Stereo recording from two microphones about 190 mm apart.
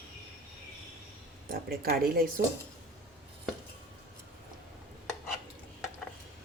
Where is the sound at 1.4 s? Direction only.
50° right (ahead or behind).